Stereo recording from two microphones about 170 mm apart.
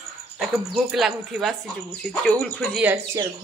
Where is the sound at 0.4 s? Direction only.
Centre (ahead or behind).